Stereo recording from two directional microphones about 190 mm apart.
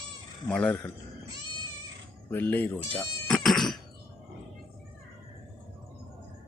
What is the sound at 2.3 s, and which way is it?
Speech, 10° left (ahead or behind).